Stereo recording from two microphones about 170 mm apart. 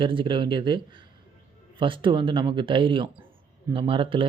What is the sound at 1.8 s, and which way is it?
Speech, 30° right (ahead or behind).